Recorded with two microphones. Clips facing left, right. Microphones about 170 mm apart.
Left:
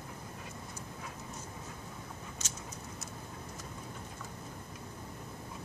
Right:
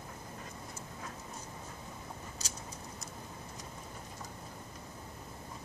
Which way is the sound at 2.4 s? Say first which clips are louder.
Even; 35° right (ahead or behind).